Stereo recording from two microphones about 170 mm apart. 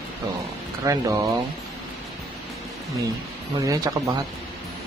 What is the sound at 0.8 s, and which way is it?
Speech, 20° right (ahead or behind).